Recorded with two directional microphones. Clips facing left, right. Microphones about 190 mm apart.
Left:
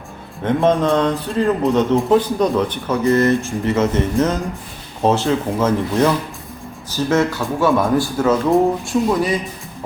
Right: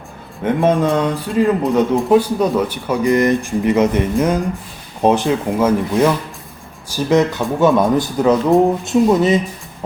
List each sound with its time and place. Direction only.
0.4 s speech: 10° right (ahead or behind)